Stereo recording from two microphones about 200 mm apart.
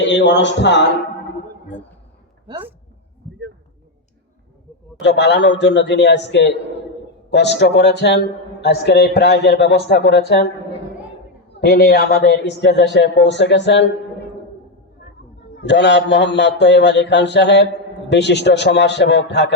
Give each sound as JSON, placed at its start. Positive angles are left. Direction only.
{"t": 0.0, "sound": "a man's voice", "side_deg": 65}
{"t": 4.9, "sound": "a man's voice", "side_deg": 60}
{"t": 11.6, "sound": "a man's voice", "side_deg": 55}
{"t": 15.5, "sound": "a man's voice", "side_deg": 60}